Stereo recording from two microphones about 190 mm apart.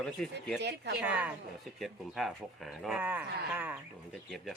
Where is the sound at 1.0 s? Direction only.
10° right (ahead or behind).